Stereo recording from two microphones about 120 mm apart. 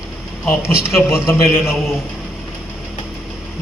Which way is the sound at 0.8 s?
20° left (ahead or behind).